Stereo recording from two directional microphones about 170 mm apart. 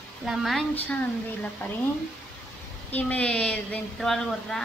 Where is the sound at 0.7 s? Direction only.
10° left (ahead or behind).